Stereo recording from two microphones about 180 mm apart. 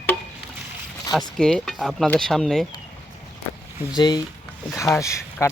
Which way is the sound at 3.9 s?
25° left (ahead or behind).